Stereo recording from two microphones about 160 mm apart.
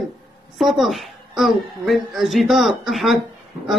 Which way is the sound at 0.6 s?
Centre (ahead or behind).